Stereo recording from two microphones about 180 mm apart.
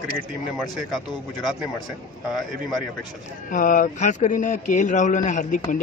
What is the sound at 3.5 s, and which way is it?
A man's voice, 50° left (ahead or behind).